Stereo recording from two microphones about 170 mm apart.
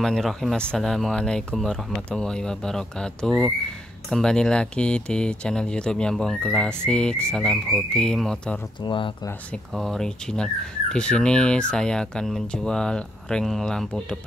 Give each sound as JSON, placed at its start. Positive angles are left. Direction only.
{"t": 0.0, "sound": "speech", "side_deg": 0}
{"t": 8.8, "sound": "speech", "side_deg": 25}
{"t": 9.8, "sound": "speech", "side_deg": 0}